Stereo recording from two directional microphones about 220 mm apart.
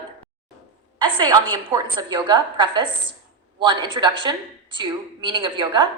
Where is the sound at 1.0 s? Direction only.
20° right (ahead or behind).